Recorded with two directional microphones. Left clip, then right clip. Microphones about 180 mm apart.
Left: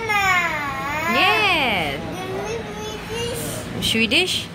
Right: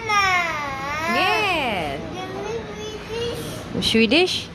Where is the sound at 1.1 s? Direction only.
Centre (ahead or behind).